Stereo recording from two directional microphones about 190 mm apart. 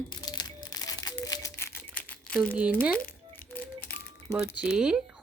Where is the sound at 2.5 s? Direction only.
10° right (ahead or behind).